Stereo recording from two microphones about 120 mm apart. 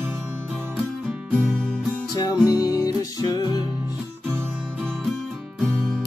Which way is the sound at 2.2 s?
30° left (ahead or behind).